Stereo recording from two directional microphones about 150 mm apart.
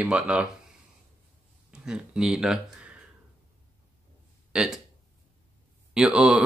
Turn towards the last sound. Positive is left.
turn(degrees=-5)  # may be behind; listen again after turning